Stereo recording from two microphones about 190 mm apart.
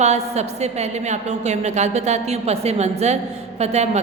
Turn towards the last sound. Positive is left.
turn(degrees=-35)  # may be behind; listen again after turning